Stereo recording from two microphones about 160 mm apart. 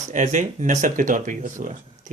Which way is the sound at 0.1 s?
50° right (ahead or behind).